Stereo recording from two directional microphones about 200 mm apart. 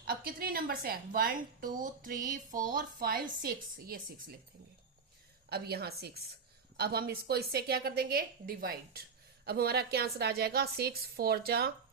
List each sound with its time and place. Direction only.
0.0 s a woman's voice: 50° right (ahead or behind)
5.5 s a woman's voice: 50° right (ahead or behind)